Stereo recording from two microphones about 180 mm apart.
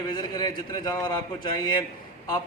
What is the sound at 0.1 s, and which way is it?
A man's voice, 25° left (ahead or behind).